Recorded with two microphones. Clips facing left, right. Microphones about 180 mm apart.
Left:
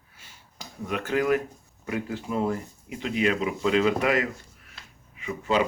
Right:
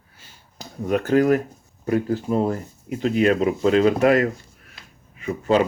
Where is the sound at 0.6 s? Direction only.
40° right (ahead or behind).